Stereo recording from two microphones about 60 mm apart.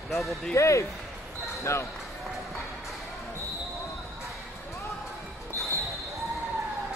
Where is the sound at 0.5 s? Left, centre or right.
Left.